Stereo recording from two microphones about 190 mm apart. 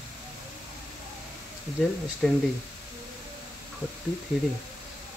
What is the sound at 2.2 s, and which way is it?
Speech, centre (ahead or behind).